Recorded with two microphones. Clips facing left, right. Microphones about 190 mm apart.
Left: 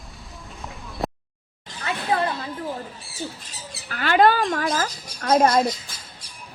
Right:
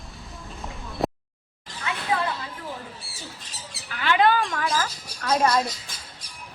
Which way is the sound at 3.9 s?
45° left (ahead or behind).